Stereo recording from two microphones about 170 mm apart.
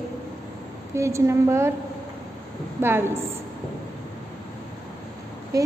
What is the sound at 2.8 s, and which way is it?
Speech, 15° right (ahead or behind).